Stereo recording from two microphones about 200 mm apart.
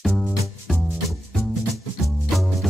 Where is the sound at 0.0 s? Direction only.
Centre (ahead or behind).